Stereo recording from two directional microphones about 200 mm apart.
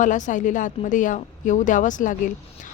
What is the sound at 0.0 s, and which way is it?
A woman's voice, 40° left (ahead or behind).